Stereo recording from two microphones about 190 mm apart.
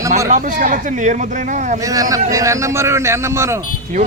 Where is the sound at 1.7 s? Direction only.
20° right (ahead or behind).